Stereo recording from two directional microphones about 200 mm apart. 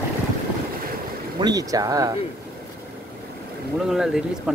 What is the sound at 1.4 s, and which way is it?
Speech, 20° right (ahead or behind).